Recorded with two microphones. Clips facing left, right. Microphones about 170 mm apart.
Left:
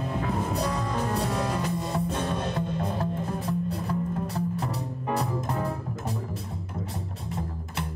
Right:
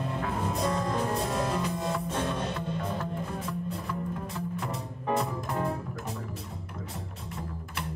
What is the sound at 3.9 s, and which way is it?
Music, 35° left (ahead or behind).